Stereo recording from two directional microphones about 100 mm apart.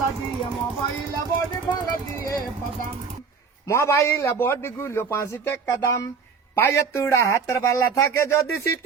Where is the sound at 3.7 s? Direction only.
30° left (ahead or behind).